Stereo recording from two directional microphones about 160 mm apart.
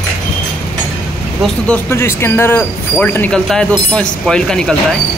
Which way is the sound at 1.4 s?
5° left (ahead or behind).